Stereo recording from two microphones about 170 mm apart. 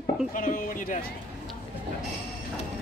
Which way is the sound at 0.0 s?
50° left (ahead or behind).